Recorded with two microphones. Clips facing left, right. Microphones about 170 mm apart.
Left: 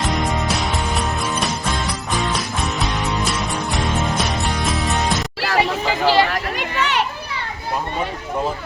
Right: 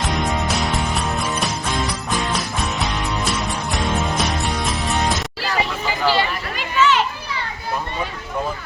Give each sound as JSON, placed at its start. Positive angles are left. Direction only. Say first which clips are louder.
{"t": 0.6, "sound": "music", "louder": "even", "side_deg": 0}
{"t": 2.8, "sound": "music", "louder": "left 1 dB", "side_deg": 0}
{"t": 5.4, "sound": "a sound", "louder": "left 4 dB", "side_deg": 70}